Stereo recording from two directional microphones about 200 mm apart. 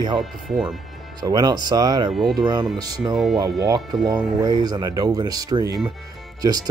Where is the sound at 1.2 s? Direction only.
20° right (ahead or behind).